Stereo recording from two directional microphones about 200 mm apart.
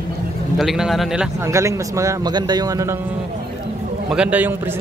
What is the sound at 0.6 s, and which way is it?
Speech, centre (ahead or behind).